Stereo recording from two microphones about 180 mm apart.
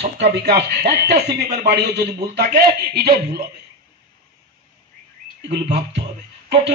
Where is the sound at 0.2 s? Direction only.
65° right (ahead or behind).